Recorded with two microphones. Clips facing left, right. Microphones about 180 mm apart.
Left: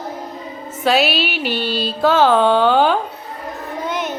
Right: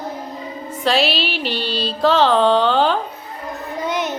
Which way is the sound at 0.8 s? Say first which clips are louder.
Left 2 dB; 5° left (ahead or behind).